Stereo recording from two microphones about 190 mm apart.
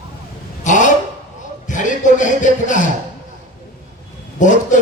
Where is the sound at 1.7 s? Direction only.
40° left (ahead or behind).